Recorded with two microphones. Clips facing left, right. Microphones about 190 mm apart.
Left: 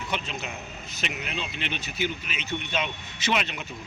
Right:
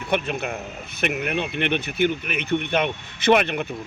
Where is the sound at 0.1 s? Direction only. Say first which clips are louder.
Right 11 dB; 55° right (ahead or behind).